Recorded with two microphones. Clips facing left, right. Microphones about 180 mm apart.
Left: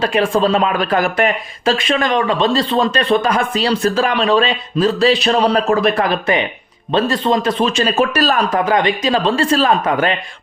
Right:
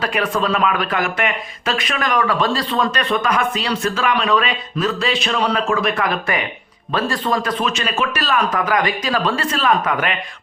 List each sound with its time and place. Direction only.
0.0 s speech: 25° left (ahead or behind)
8.6 s speech: 25° left (ahead or behind)